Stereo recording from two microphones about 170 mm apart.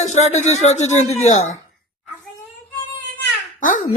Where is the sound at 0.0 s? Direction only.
45° left (ahead or behind).